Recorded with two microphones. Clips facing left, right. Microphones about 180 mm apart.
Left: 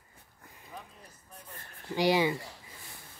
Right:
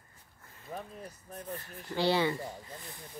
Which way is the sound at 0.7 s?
50° right (ahead or behind).